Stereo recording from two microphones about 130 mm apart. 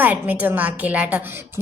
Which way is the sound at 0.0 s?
15° right (ahead or behind).